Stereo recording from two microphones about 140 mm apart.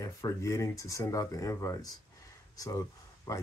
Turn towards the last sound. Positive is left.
turn(degrees=25)  # may be behind; listen again after turning